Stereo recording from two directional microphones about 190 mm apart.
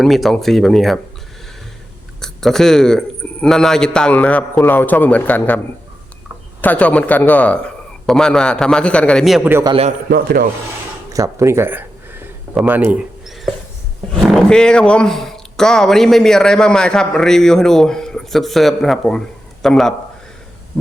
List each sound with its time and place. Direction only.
0.0 s speech: centre (ahead or behind)
2.2 s a man's voice: centre (ahead or behind)
6.6 s speech: 10° left (ahead or behind)
9.5 s a man's voice: 15° right (ahead or behind)
10.1 s rub: 50° right (ahead or behind)
11.1 s a sound: 15° right (ahead or behind)
14.1 s speech: centre (ahead or behind)